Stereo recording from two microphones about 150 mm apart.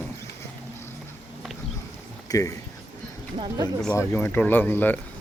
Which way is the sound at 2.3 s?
25° left (ahead or behind).